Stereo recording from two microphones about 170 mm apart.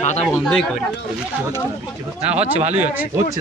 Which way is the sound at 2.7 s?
10° right (ahead or behind).